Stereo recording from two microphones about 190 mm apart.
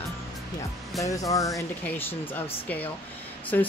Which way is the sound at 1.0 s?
15° left (ahead or behind).